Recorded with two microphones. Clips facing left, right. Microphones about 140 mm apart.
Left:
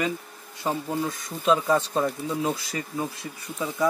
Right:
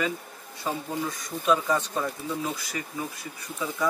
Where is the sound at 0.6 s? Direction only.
25° left (ahead or behind).